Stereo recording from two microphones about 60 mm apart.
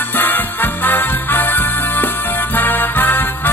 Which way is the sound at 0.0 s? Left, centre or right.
Left.